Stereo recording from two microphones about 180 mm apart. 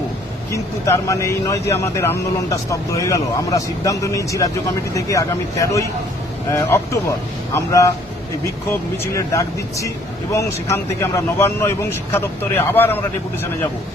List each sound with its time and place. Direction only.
0.5 s speech: 15° left (ahead or behind)
9.1 s speech: 15° left (ahead or behind)